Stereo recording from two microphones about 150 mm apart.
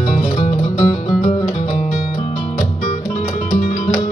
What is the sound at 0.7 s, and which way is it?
Music, 50° left (ahead or behind).